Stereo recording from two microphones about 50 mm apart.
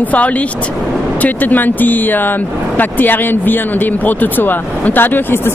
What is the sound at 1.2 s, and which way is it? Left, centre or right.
Speech, left.